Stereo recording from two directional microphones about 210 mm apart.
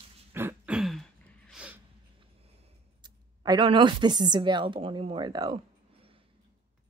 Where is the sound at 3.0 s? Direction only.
20° right (ahead or behind).